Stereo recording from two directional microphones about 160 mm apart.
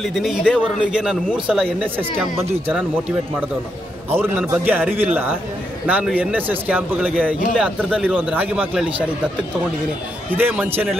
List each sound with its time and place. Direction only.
0.0 s a man's voice: centre (ahead or behind)
4.1 s a man's voice: 15° right (ahead or behind); by 8.2 s 5° left (ahead or behind)
8.3 s speech: 10° right (ahead or behind)
10.3 s speech: 10° right (ahead or behind)